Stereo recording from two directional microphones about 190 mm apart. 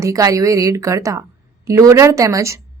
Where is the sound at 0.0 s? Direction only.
15° right (ahead or behind).